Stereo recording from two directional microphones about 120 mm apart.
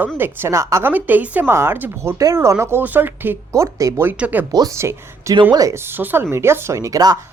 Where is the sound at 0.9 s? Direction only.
15° right (ahead or behind).